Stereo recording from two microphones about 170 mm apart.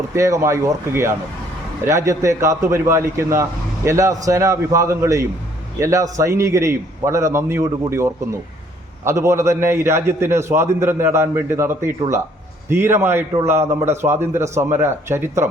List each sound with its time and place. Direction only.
0.1 s a man's voice: 15° right (ahead or behind)